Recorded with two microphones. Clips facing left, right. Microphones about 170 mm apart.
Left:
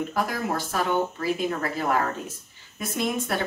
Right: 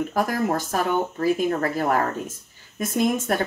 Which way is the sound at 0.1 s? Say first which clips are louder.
Right 4 dB; 45° right (ahead or behind).